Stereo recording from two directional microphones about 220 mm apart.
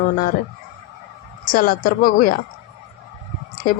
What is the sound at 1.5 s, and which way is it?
Speech, 40° left (ahead or behind).